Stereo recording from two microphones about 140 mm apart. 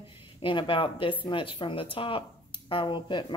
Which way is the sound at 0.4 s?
35° left (ahead or behind).